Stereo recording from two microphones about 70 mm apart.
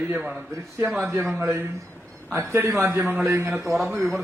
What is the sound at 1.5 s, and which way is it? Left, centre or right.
Speech, right.